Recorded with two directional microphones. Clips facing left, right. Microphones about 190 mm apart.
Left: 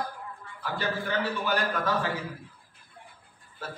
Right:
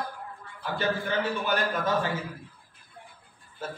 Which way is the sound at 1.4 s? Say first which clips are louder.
Right 1 dB; 20° right (ahead or behind).